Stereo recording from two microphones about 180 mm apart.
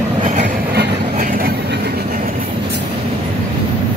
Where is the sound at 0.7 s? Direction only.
55° right (ahead or behind).